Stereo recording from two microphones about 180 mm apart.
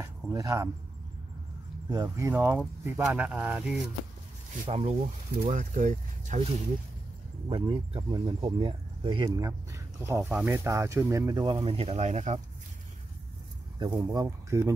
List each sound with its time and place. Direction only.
0.0 s speech: 20° right (ahead or behind)
1.9 s speech: 20° right (ahead or behind)
4.6 s speech: 35° right (ahead or behind)
7.4 s speech: 30° right (ahead or behind)
9.5 s a sound: 15° right (ahead or behind)
10.2 s speech: 5° right (ahead or behind); by 12.4 s 40° right (ahead or behind)
13.9 s speech: 20° right (ahead or behind)